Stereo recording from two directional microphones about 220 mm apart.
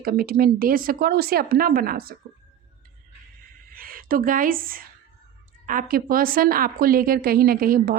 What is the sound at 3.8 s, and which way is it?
A woman's voice, 40° right (ahead or behind).